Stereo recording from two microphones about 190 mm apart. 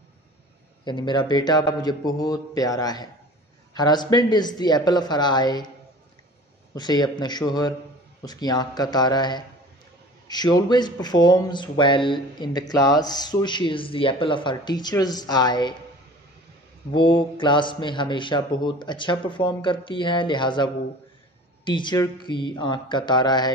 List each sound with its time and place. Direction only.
0.8 s speech: 25° left (ahead or behind)
6.7 s speech: 20° left (ahead or behind)
16.9 s speech: 25° left (ahead or behind)